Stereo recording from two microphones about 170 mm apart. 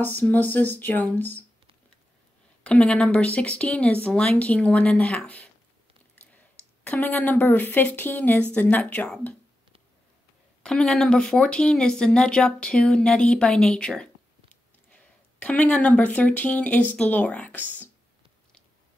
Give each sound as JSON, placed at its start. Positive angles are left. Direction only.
{"t": 0.0, "sound": "speech", "side_deg": 10}
{"t": 2.6, "sound": "speech", "side_deg": 5}
{"t": 6.2, "sound": "a sound", "side_deg": 10}
{"t": 6.8, "sound": "speech", "side_deg": 10}
{"t": 10.6, "sound": "speech", "side_deg": 5}